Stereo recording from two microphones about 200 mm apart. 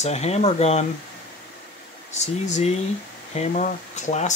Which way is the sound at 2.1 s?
35° left (ahead or behind).